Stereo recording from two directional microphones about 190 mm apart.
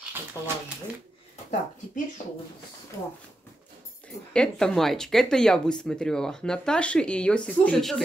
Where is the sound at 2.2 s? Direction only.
40° left (ahead or behind).